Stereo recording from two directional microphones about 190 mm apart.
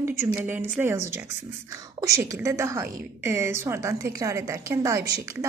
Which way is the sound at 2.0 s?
15° right (ahead or behind).